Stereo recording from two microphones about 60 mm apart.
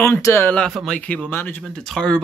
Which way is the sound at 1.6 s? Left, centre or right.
Centre.